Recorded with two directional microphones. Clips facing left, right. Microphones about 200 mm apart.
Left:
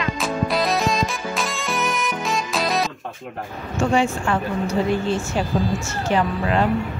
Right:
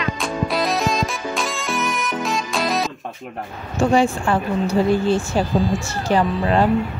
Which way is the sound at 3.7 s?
35° right (ahead or behind).